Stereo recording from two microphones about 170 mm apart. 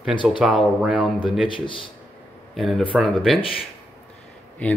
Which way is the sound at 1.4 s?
30° left (ahead or behind).